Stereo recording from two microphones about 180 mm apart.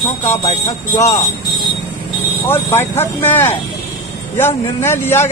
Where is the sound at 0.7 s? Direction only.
15° left (ahead or behind).